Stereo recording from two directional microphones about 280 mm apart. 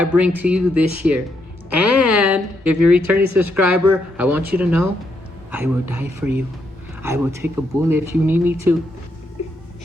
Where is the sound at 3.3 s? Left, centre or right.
Right.